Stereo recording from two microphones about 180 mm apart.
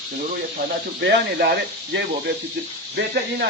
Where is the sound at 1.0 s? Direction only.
70° right (ahead or behind).